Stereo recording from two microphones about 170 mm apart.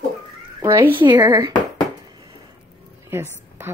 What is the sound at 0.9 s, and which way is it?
Speech, 25° right (ahead or behind).